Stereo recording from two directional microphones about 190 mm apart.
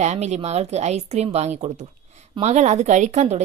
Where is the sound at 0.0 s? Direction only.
35° right (ahead or behind).